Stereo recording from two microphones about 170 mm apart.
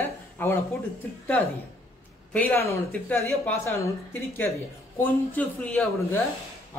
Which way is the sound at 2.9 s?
10° left (ahead or behind).